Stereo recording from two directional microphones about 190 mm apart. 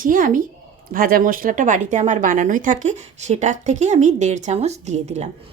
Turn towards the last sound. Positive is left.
turn(degrees=-35)  # may be behind; listen again after turning